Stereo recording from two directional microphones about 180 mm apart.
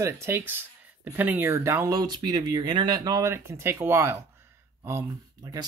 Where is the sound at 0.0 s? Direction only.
10° right (ahead or behind).